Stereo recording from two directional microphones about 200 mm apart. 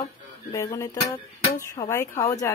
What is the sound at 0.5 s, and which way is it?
Speech, 15° left (ahead or behind).